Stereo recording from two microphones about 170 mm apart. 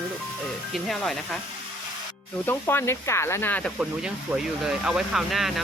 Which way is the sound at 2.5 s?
15° left (ahead or behind).